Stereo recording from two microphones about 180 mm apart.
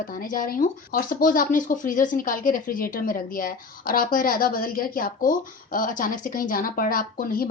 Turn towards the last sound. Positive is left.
turn(degrees=50)  # may be behind; listen again after turning